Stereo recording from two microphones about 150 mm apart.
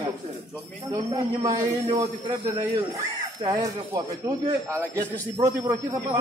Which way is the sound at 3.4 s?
25° right (ahead or behind).